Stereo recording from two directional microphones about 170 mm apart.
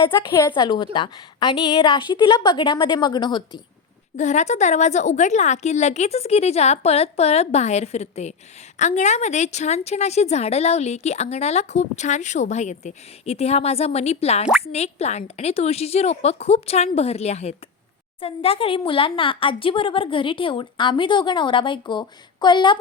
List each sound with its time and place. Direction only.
0.0 s a woman's voice: 20° left (ahead or behind)
4.2 s a woman's voice: 45° left (ahead or behind); by 22.8 s 25° left (ahead or behind)